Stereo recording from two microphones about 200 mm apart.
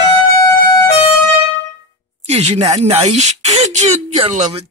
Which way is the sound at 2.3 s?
30° right (ahead or behind).